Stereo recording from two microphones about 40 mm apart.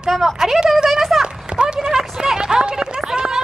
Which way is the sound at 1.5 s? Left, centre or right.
Centre.